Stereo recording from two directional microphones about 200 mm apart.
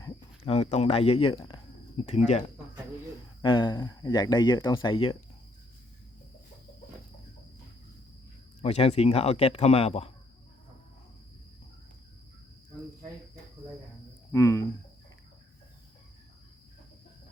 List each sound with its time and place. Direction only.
0.4 s speech: 30° left (ahead or behind)
3.4 s speech: 25° left (ahead or behind)
8.6 s speech: 30° left (ahead or behind)
14.3 s speech: 15° left (ahead or behind)